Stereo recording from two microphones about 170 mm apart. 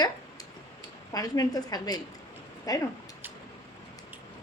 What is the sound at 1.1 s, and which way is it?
A woman's voice, 20° left (ahead or behind).